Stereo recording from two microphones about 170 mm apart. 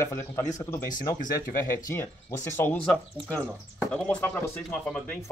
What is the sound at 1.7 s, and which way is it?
Speech, 15° left (ahead or behind).